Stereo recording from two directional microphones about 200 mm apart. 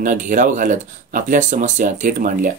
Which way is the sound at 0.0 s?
40° right (ahead or behind).